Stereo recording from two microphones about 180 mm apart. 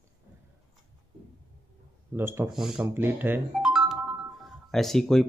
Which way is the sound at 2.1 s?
15° right (ahead or behind).